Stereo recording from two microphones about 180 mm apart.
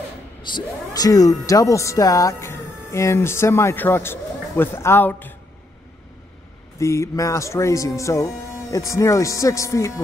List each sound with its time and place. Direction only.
0.5 s speech: 20° left (ahead or behind)
6.8 s speech: 15° left (ahead or behind)